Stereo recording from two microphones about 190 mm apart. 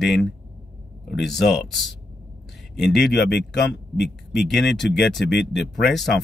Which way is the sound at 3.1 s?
65° left (ahead or behind).